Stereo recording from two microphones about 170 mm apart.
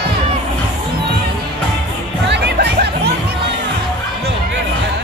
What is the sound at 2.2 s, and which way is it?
Music, 85° right.